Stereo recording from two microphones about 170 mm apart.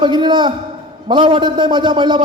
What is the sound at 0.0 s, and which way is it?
Speech, 25° right (ahead or behind).